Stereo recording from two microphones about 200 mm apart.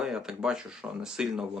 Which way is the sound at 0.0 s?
Centre (ahead or behind).